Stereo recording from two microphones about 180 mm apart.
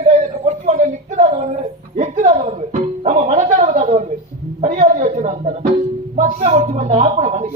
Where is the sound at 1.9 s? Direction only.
40° right (ahead or behind).